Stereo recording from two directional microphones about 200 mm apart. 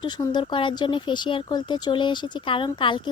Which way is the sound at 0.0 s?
25° left (ahead or behind).